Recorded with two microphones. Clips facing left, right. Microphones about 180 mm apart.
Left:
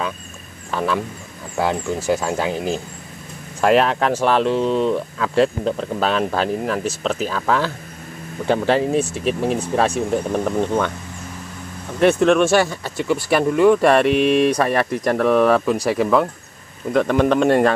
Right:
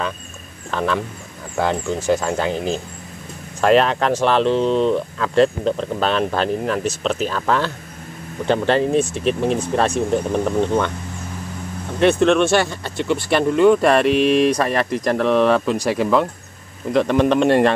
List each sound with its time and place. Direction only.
0.7 s a man's voice: 5° left (ahead or behind)
12.0 s speech: 5° left (ahead or behind)
14.0 s speech: 60° left (ahead or behind)
14.5 s speech: 10° left (ahead or behind)
17.0 s speech: 15° right (ahead or behind)
17.4 s speech: centre (ahead or behind)